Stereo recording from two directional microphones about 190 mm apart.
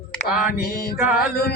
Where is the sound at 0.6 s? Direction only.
55° left (ahead or behind).